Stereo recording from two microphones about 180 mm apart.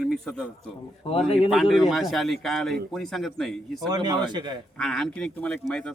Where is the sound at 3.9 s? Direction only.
20° right (ahead or behind).